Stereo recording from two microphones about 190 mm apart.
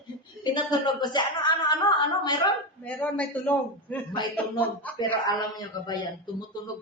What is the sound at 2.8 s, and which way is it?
A man's voice, 5° left (ahead or behind).